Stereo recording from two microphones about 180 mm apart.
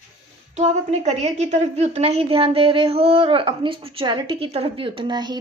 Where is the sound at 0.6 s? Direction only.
40° right (ahead or behind).